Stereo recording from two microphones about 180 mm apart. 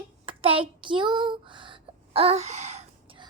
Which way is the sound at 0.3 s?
30° right (ahead or behind).